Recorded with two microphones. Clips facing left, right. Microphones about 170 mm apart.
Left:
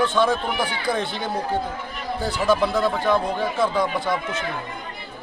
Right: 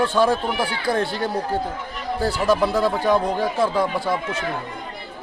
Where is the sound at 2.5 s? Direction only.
10° right (ahead or behind).